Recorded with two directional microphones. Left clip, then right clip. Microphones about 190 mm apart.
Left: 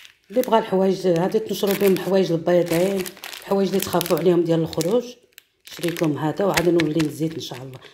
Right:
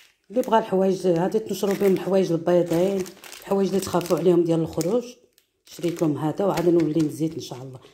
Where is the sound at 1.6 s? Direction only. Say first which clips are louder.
Left 2 dB; 10° left (ahead or behind).